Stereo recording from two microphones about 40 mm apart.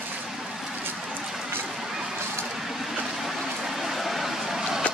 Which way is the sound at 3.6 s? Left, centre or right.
Centre.